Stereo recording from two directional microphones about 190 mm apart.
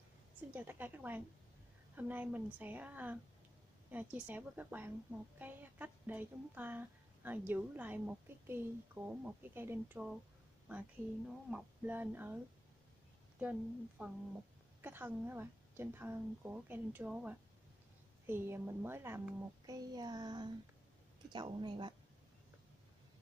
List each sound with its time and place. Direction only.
0.5 s speech: 10° right (ahead or behind)
11.4 s speech: 5° right (ahead or behind)
13.4 s a woman's voice: 5° right (ahead or behind); by 21.9 s 25° right (ahead or behind)